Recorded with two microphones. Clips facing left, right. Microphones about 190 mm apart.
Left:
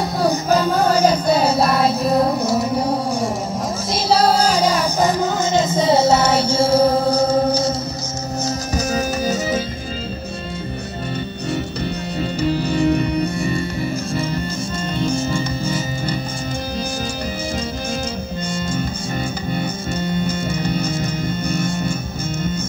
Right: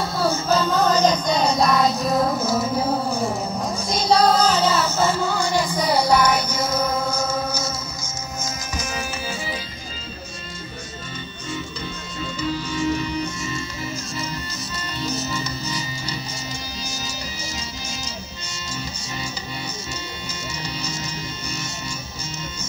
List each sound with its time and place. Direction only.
0.2 s music: 15° left (ahead or behind); by 3.3 s centre (ahead or behind)
3.9 s child singing: 5° left (ahead or behind); by 7.5 s 35° left (ahead or behind)
8.5 s music: 40° left (ahead or behind)
12.2 s music: 60° left (ahead or behind)
20.0 s music: 55° left (ahead or behind)